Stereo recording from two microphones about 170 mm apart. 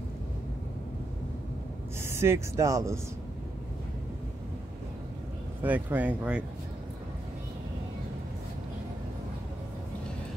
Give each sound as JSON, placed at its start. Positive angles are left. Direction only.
{"t": 2.0, "sound": "speech", "side_deg": -15}
{"t": 5.6, "sound": "speech", "side_deg": -10}